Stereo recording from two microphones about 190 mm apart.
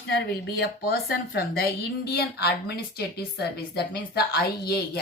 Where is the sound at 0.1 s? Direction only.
60° left (ahead or behind).